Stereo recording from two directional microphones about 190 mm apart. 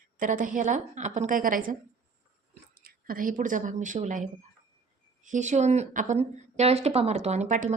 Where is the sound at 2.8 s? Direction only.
50° right (ahead or behind).